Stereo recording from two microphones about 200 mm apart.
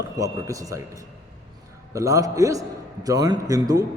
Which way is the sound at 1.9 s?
15° right (ahead or behind).